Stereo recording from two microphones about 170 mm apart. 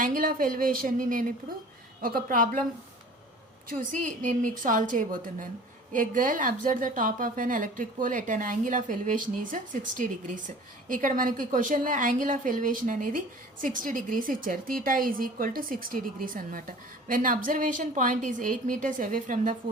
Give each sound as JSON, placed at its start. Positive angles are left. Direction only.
{"t": 0.0, "sound": "a woman's voice", "side_deg": -55}
{"t": 3.7, "sound": "a woman's voice", "side_deg": -45}